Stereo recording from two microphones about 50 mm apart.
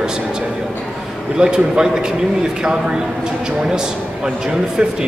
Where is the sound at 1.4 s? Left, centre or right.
Centre.